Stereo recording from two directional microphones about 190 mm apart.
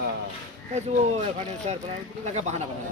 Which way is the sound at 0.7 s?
35° right (ahead or behind).